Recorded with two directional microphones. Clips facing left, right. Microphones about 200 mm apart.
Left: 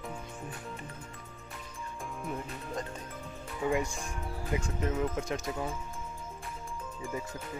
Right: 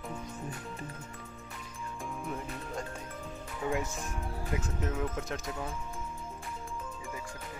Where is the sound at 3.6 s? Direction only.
Centre (ahead or behind).